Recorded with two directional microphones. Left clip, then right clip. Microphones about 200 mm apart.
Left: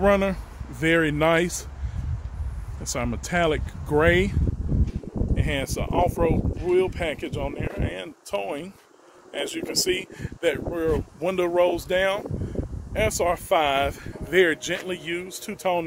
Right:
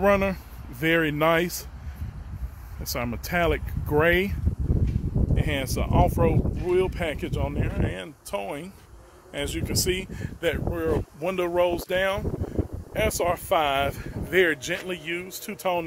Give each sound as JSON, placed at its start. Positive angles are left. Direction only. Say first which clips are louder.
{"t": 0.0, "sound": "speech", "louder": "left 1 dB", "side_deg": -5}
{"t": 2.8, "sound": "speech", "louder": "left 1 dB", "side_deg": 0}
{"t": 8.3, "sound": "speech", "louder": "left 3 dB", "side_deg": 20}